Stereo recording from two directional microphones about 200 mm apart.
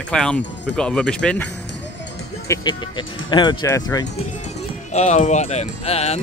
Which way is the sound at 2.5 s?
25° left (ahead or behind).